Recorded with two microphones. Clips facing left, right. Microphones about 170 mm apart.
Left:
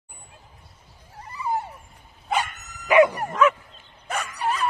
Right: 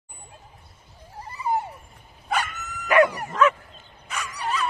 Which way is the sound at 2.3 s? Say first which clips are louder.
Left 1 dB; 20° left (ahead or behind).